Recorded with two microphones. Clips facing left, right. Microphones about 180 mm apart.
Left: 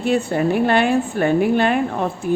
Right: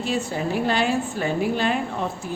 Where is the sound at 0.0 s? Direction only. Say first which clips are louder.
Left 7 dB; 60° left (ahead or behind).